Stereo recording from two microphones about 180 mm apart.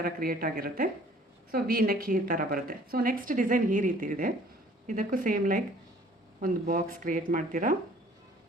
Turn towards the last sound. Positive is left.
turn(degrees=-50)  # may be behind; listen again after turning